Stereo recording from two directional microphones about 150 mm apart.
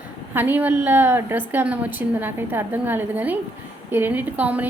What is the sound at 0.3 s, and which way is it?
A woman's voice, 10° right (ahead or behind).